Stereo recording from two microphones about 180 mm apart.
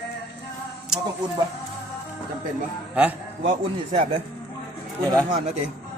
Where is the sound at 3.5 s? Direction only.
35° right (ahead or behind).